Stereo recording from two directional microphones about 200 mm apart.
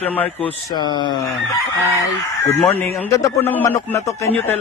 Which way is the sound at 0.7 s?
20° left (ahead or behind).